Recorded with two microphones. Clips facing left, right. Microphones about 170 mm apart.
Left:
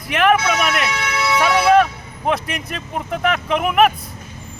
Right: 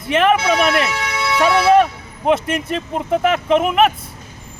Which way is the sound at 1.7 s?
Centre (ahead or behind).